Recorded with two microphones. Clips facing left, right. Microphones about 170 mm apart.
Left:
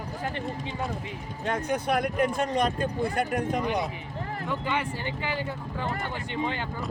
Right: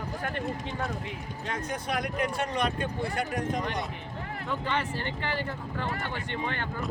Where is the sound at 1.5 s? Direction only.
55° left (ahead or behind).